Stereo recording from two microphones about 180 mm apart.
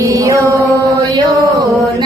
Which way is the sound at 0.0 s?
15° right (ahead or behind).